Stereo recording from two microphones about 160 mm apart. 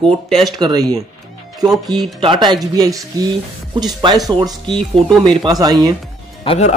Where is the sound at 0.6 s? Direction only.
25° right (ahead or behind).